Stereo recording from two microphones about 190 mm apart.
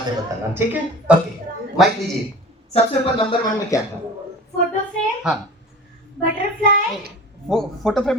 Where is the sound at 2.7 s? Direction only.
25° left (ahead or behind).